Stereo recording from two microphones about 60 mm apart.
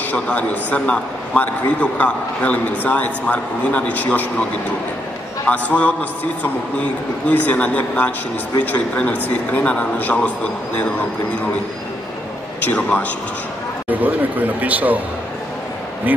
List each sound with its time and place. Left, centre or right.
0.1 s a man's voice: left
5.5 s a man's voice: left
12.6 s a man's voice: left
13.8 s speech: right